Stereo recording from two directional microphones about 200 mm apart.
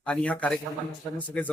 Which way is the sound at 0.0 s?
5° left (ahead or behind).